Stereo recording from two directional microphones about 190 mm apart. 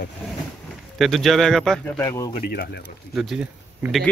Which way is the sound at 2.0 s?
20° left (ahead or behind).